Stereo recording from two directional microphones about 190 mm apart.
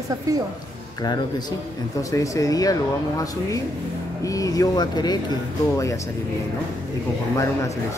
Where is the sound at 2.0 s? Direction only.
15° left (ahead or behind).